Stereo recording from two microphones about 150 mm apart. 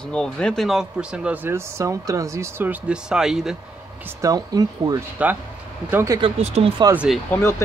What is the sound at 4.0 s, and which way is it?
Speech, 20° right (ahead or behind).